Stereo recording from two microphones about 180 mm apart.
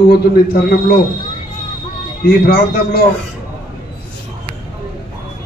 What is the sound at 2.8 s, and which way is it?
Speech, 55° left (ahead or behind).